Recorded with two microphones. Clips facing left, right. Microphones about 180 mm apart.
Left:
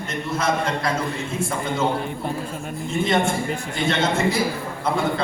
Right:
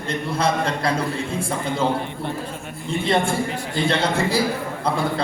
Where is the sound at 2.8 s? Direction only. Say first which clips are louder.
Even; 30° right (ahead or behind).